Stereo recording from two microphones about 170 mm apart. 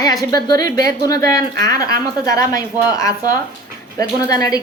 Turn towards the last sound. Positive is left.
turn(degrees=20)  # may be behind; listen again after turning